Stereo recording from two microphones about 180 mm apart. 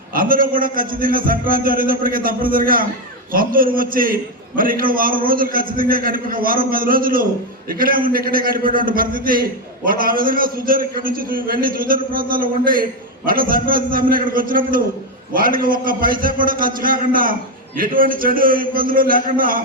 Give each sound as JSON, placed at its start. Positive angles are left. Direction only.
{"t": 0.1, "sound": "a man's voice", "side_deg": -50}